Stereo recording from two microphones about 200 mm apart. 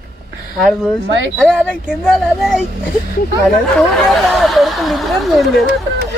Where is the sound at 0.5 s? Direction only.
Centre (ahead or behind).